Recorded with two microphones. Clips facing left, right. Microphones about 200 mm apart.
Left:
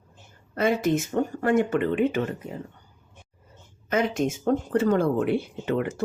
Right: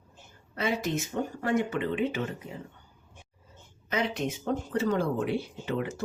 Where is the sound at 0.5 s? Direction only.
50° left (ahead or behind).